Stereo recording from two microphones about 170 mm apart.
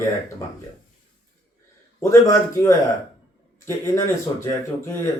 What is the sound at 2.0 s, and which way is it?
Speech, 15° left (ahead or behind).